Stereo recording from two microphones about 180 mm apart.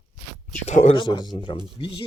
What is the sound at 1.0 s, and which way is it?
Speech, 25° left (ahead or behind).